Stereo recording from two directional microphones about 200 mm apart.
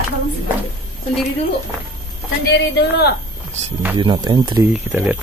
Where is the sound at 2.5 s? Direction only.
55° left (ahead or behind).